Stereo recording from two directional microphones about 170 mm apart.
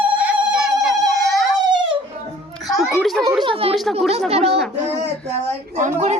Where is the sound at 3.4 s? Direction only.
30° right (ahead or behind).